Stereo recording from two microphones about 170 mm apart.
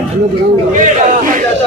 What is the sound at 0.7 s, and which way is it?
Speech, 50° right (ahead or behind).